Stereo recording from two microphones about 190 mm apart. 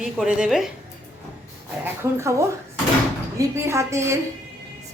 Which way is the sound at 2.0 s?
15° right (ahead or behind).